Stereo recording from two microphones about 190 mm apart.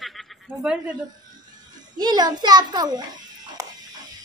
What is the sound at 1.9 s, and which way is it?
Speech, 20° right (ahead or behind).